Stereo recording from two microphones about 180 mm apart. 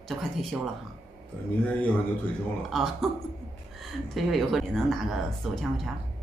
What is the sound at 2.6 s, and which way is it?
Speech, centre (ahead or behind).